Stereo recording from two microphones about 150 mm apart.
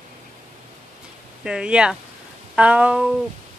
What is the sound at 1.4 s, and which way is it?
Speech, 5° right (ahead or behind).